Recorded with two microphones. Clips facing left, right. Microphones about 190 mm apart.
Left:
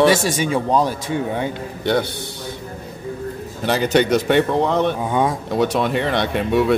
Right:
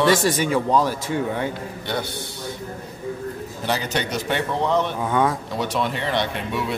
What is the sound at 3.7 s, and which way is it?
Speech, 60° left (ahead or behind).